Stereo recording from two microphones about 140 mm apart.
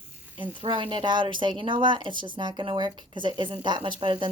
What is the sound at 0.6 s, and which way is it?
Speech, 35° right (ahead or behind).